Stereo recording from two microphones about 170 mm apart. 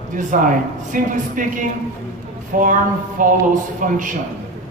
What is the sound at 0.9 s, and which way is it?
A man's voice, 50° right (ahead or behind).